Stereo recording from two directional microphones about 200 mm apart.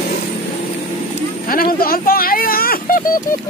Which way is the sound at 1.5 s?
45° left (ahead or behind).